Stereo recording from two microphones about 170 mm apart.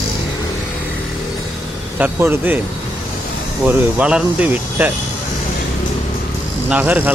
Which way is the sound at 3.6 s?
5° right (ahead or behind).